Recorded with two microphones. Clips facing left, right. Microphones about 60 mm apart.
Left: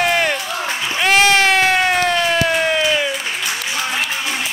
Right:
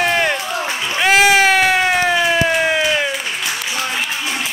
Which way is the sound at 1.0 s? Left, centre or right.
Centre.